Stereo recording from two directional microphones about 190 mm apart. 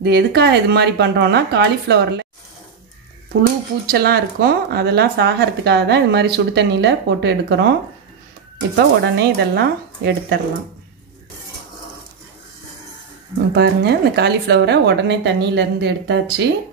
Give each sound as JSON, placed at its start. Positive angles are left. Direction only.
{"t": 0.0, "sound": "speech", "side_deg": -60}
{"t": 3.8, "sound": "speech", "side_deg": -55}
{"t": 8.7, "sound": "speech", "side_deg": -60}
{"t": 13.6, "sound": "speech", "side_deg": -60}